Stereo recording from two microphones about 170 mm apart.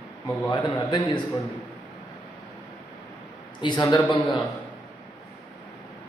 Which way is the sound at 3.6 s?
25° left (ahead or behind).